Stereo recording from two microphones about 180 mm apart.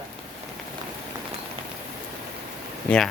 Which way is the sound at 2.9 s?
10° left (ahead or behind).